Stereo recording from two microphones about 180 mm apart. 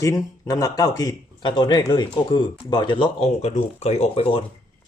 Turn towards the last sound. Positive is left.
turn(degrees=30)  # may be behind; listen again after turning